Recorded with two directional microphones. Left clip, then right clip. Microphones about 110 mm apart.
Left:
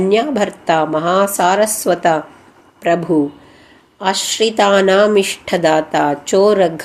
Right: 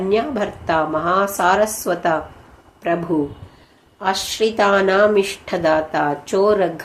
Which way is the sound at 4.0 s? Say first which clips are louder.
Left 3 dB; 40° left (ahead or behind).